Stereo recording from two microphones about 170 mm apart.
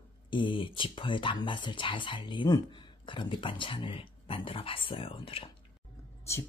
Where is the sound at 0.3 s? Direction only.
30° left (ahead or behind).